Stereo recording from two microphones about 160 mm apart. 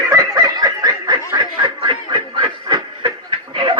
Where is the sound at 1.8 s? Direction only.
30° right (ahead or behind).